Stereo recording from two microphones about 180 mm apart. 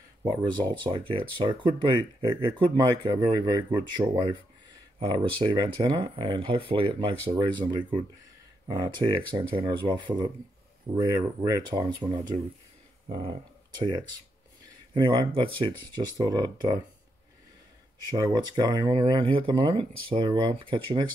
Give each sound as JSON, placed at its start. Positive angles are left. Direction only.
{"t": 0.2, "sound": "speech", "side_deg": -25}
{"t": 5.0, "sound": "speech", "side_deg": -25}
{"t": 13.7, "sound": "speech", "side_deg": -20}
{"t": 18.1, "sound": "speech", "side_deg": -20}